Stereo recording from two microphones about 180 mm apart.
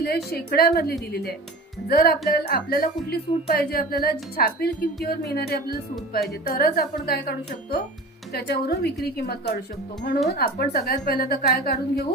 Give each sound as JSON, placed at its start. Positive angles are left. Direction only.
{"t": 0.3, "sound": "speech", "side_deg": 60}